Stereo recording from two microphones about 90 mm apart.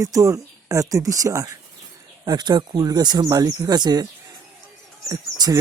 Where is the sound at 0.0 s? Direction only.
40° right (ahead or behind).